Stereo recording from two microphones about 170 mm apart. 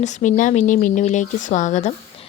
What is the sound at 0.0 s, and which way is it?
Speech, 45° left (ahead or behind).